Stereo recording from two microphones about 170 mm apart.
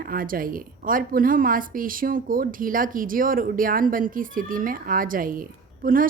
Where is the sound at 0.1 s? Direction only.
55° right (ahead or behind).